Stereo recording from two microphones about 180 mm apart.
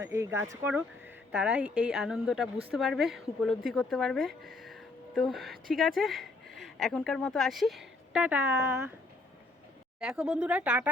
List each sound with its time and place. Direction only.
0.0 s speech: 15° right (ahead or behind)
1.3 s speech: 5° right (ahead or behind)
10.0 s speech: 5° right (ahead or behind)